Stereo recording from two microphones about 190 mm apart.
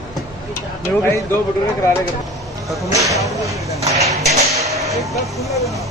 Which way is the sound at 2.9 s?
15° right (ahead or behind).